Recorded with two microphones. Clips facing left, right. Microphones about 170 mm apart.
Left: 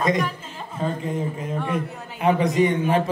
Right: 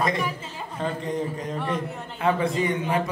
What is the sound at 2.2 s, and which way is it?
Speech, 20° left (ahead or behind).